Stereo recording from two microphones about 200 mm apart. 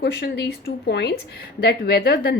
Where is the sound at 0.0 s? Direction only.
55° left (ahead or behind).